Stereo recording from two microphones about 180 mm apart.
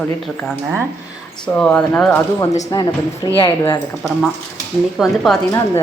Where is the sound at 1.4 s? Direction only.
5° left (ahead or behind).